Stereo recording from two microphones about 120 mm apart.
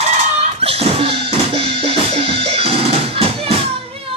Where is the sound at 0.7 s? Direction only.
50° right (ahead or behind).